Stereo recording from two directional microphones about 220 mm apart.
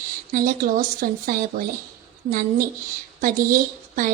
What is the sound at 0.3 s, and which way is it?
A woman's voice, 40° right (ahead or behind).